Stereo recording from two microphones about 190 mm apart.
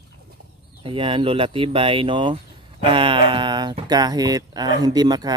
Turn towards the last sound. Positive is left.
turn(degrees=-20)  # may be behind; listen again after turning